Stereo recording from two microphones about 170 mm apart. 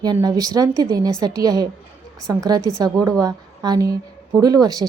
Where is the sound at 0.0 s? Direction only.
25° right (ahead or behind).